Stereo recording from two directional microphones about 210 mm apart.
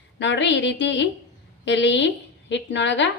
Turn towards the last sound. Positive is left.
turn(degrees=60)  # may be behind; listen again after turning